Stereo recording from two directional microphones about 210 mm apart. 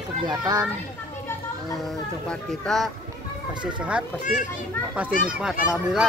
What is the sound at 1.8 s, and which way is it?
A child's voice, 5° left (ahead or behind).